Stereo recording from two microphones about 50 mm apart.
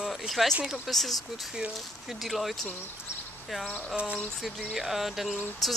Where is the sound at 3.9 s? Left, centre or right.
Right.